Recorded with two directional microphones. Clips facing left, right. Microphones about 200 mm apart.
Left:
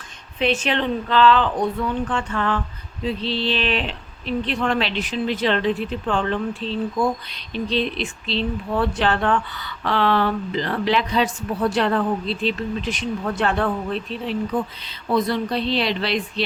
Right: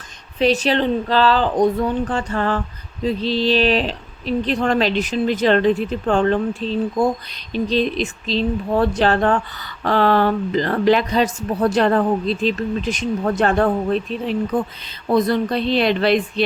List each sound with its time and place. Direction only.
0.3 s speech: 35° right (ahead or behind)